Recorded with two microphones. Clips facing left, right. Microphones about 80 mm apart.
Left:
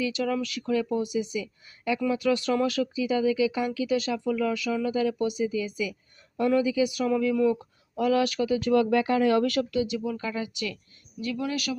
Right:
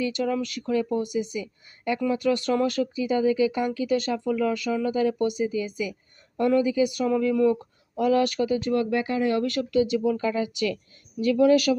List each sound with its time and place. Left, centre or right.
0.0 s a woman's voice: right
8.6 s speech: left
9.6 s speech: right